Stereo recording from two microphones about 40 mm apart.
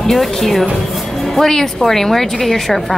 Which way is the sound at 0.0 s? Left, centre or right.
Centre.